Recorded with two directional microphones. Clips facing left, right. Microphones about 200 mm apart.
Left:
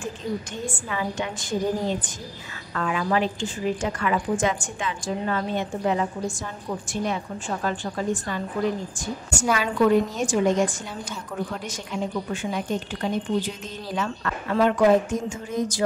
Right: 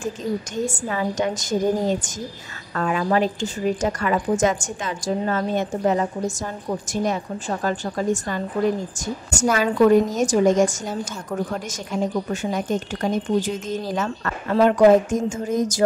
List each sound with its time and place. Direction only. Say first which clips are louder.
0.7 s a woman's voice: right 4 dB; 40° right (ahead or behind)